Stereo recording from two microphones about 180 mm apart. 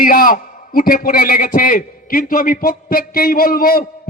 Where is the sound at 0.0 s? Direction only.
50° left (ahead or behind).